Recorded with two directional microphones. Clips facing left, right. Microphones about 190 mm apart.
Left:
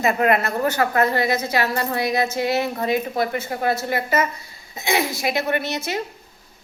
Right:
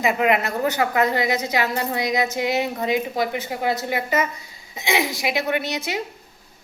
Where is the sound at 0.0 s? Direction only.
15° right (ahead or behind).